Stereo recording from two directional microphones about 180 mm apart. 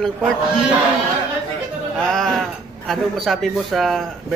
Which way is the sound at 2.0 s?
5° left (ahead or behind).